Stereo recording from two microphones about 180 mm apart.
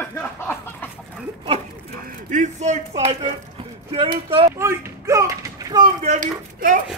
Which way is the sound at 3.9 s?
30° right (ahead or behind).